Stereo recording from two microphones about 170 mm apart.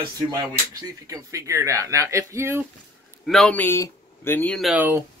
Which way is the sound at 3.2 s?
5° left (ahead or behind).